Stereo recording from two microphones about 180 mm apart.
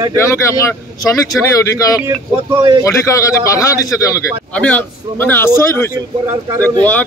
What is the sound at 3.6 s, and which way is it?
Speech, 15° left (ahead or behind).